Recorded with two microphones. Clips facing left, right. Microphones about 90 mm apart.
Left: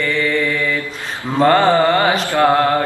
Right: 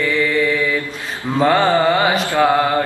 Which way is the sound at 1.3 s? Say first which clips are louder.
Left 2 dB; 5° right (ahead or behind).